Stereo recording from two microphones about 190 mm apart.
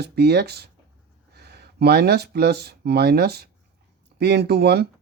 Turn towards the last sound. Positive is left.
turn(degrees=-60)  # may be behind; listen again after turning